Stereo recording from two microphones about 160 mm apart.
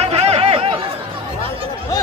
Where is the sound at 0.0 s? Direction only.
40° right (ahead or behind).